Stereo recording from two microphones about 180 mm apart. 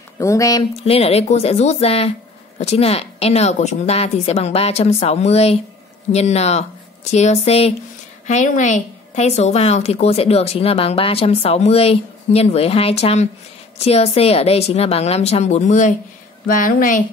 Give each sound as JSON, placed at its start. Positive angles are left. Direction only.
{"t": 0.2, "sound": "speech", "side_deg": 20}
{"t": 0.7, "sound": "a woman's voice", "side_deg": 35}